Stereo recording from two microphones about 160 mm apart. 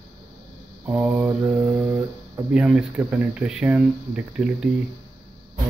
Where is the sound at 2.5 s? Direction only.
5° right (ahead or behind).